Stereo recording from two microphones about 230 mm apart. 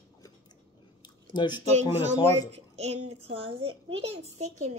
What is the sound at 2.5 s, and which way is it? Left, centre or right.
A child's voice, right.